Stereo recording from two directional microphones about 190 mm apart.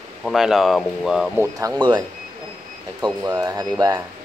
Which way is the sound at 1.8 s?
25° right (ahead or behind).